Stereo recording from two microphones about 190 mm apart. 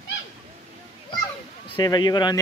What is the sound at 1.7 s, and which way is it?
Speech, 25° left (ahead or behind).